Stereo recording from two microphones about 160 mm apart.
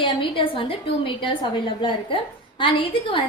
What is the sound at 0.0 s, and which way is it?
A woman's voice, 30° left (ahead or behind).